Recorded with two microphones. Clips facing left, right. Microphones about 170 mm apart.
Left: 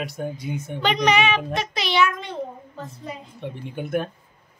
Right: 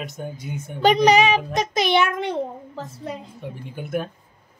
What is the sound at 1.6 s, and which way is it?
Speech, 50° right (ahead or behind).